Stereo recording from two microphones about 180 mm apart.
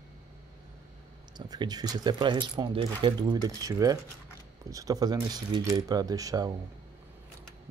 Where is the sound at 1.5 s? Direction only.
20° right (ahead or behind).